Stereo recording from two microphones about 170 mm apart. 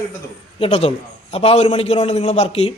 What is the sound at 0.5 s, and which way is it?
Speech, 35° left (ahead or behind).